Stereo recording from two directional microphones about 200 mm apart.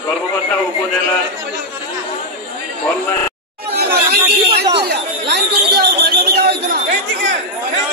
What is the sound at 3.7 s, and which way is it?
Chatter, 50° right (ahead or behind).